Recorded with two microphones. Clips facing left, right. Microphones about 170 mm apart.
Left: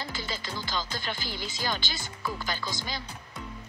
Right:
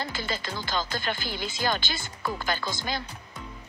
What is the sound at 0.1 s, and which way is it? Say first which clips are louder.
Speech: right 3 dB; 55° right (ahead or behind).